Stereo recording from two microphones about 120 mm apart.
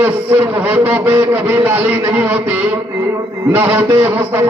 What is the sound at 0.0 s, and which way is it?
A man's voice, 15° right (ahead or behind).